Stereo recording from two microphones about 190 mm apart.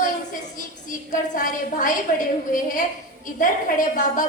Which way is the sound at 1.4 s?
45° left (ahead or behind).